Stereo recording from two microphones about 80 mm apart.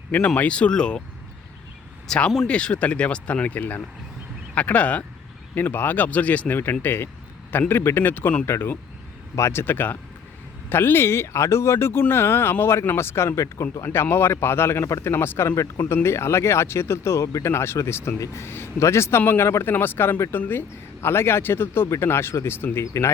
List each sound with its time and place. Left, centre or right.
0.3 s speech: centre
2.0 s speech: centre; by 23.1 s left